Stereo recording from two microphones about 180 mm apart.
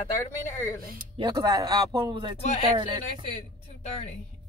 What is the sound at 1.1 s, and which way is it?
Speech, 25° right (ahead or behind).